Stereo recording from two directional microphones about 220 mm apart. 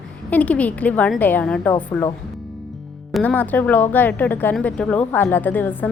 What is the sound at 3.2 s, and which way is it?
A woman's voice, 5° left (ahead or behind).